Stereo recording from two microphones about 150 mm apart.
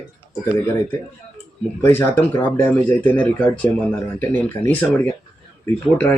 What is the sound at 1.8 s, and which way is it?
Speech, 15° left (ahead or behind).